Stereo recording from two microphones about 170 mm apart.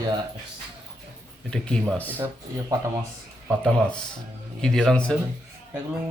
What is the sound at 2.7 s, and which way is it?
Speech, 20° right (ahead or behind).